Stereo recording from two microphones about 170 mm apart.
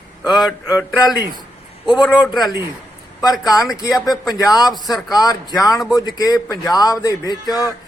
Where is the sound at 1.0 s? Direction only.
25° left (ahead or behind).